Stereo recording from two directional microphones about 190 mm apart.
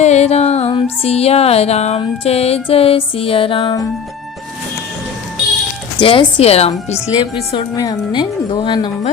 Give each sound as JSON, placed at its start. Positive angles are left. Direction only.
{"t": 0.0, "sound": "music", "side_deg": 35}
{"t": 6.0, "sound": "music", "side_deg": 30}
{"t": 7.5, "sound": "a woman's voice", "side_deg": 20}